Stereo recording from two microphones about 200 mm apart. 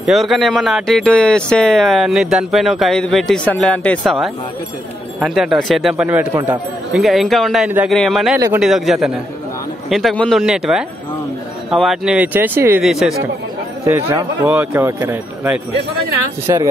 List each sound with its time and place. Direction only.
0.0 s speech: centre (ahead or behind); by 16.6 s 15° right (ahead or behind)